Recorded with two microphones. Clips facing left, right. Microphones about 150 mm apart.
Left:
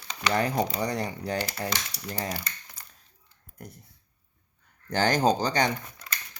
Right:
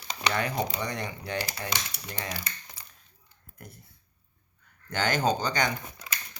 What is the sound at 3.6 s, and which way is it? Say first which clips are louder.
Speech: left 4 dB; 40° left (ahead or behind).